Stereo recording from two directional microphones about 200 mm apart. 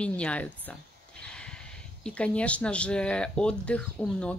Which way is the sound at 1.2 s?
5° left (ahead or behind).